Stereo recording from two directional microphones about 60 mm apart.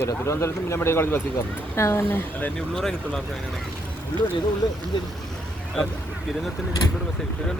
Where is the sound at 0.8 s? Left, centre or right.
Left.